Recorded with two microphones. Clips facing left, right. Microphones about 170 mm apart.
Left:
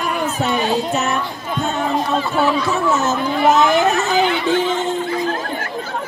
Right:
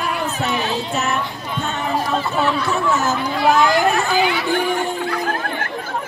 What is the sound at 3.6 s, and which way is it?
Speech, 20° left (ahead or behind).